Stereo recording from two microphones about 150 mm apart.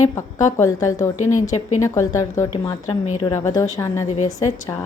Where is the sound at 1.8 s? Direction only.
20° left (ahead or behind).